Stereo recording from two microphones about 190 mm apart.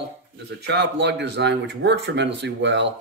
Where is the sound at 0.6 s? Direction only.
60° right (ahead or behind).